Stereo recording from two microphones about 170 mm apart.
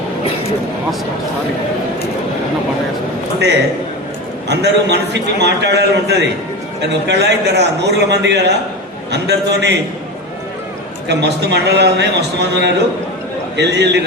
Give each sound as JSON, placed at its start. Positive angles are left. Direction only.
{"t": 4.4, "sound": "a man's voice", "side_deg": -80}
{"t": 11.1, "sound": "a man's voice", "side_deg": -85}